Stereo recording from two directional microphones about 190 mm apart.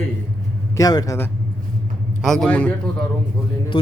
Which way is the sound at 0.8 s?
20° left (ahead or behind).